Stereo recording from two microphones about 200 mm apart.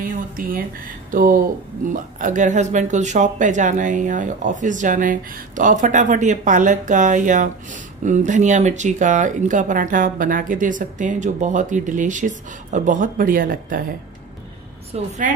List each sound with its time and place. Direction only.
0.0 s speech: 45° right (ahead or behind)
14.9 s speech: 40° right (ahead or behind)